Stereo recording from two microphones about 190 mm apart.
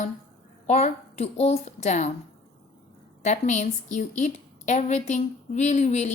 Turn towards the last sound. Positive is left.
turn(degrees=35)  # may be behind; listen again after turning